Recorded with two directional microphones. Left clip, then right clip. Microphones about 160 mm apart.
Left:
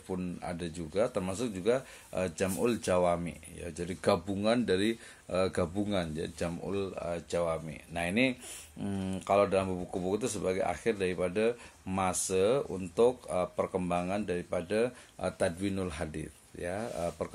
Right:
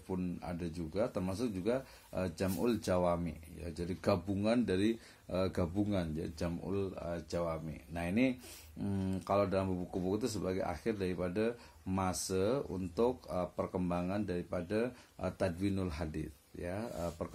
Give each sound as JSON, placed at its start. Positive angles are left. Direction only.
{"t": 0.1, "sound": "speech", "side_deg": 20}